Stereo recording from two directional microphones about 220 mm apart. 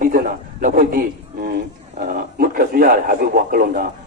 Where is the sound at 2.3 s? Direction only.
40° right (ahead or behind).